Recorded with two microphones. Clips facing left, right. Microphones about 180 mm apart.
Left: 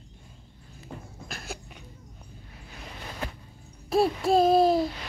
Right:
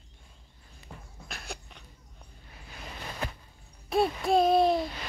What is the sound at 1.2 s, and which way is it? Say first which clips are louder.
Cough: left 2 dB; centre (ahead or behind).